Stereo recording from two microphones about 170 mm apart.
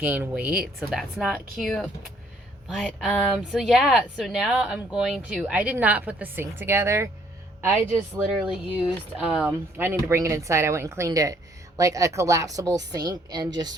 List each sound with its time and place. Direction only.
0.0 s a woman's voice: 10° right (ahead or behind); by 13.7 s 25° right (ahead or behind)